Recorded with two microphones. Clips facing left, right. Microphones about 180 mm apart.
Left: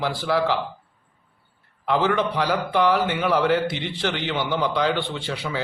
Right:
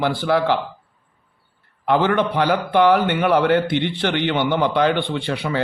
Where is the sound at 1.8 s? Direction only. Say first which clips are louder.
Right 3 dB; 55° right (ahead or behind).